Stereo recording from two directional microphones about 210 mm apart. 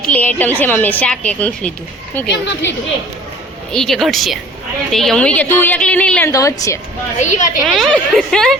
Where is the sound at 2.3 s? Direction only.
60° left (ahead or behind).